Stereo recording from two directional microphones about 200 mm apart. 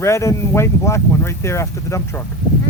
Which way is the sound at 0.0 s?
15° left (ahead or behind).